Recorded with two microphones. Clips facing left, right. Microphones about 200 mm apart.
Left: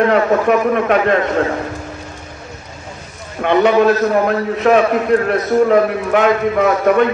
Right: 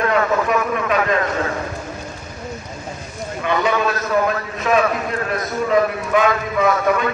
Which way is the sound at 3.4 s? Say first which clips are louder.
Left 8 dB; 65° left (ahead or behind).